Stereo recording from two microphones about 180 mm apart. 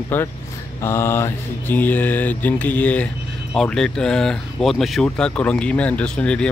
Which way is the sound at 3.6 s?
5° left (ahead or behind).